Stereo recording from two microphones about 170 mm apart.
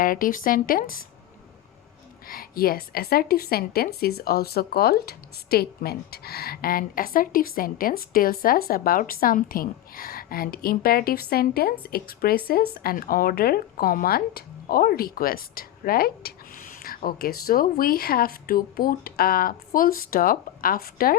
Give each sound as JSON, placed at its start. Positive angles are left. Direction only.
{"t": 0.0, "sound": "a woman's voice", "side_deg": 55}
{"t": 2.2, "sound": "a woman's voice", "side_deg": 60}